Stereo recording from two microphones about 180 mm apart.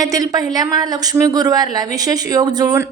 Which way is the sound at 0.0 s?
20° right (ahead or behind).